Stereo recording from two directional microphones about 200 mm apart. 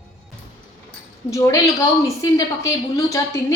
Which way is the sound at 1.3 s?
15° left (ahead or behind).